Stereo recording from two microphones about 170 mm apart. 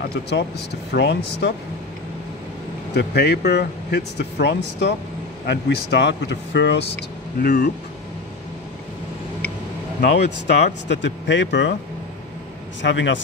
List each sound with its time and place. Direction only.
0.0 s speech: 85° left
2.9 s speech: 75° left (ahead or behind)
5.5 s speech: 80° left
10.0 s speech: 80° left
12.8 s speech: 90° left